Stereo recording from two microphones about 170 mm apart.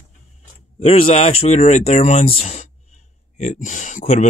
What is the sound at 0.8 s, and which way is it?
Speech, 40° left (ahead or behind).